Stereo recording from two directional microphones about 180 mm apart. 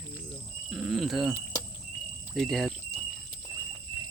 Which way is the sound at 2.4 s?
Centre (ahead or behind).